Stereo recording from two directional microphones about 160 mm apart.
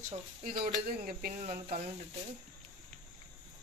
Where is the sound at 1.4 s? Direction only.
45° right (ahead or behind).